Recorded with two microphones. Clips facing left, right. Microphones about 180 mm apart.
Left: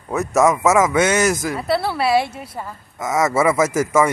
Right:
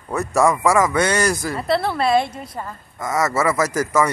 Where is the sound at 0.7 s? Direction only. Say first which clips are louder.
Left 2 dB; 20° left (ahead or behind).